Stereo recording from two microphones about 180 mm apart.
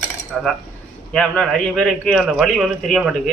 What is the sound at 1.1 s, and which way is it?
A man's voice, 5° left (ahead or behind).